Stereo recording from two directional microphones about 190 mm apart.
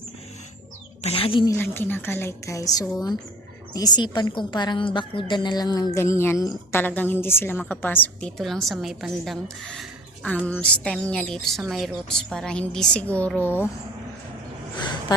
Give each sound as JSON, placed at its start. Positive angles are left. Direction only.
{"t": 1.0, "sound": "a woman's voice", "side_deg": 30}
{"t": 1.5, "sound": "a woman's voice", "side_deg": 10}